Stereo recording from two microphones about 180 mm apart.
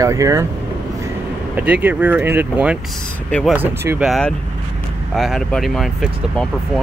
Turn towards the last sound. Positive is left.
turn(degrees=0)  # may be behind; listen again after turning